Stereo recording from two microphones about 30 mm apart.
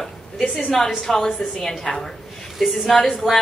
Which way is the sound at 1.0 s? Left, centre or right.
Centre.